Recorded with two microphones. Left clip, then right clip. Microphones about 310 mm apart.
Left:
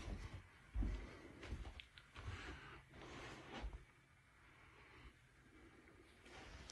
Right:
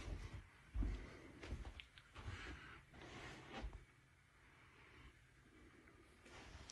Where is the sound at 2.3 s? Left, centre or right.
Centre.